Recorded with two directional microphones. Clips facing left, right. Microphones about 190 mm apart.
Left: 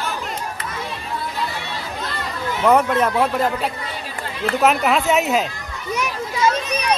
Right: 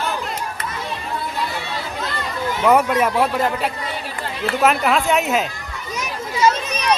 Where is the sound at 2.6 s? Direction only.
10° right (ahead or behind).